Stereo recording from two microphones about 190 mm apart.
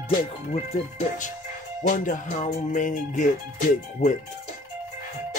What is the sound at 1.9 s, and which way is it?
Music, 40° left (ahead or behind).